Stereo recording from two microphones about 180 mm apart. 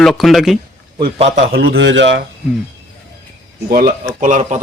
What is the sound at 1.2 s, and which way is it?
Speech, 35° right (ahead or behind).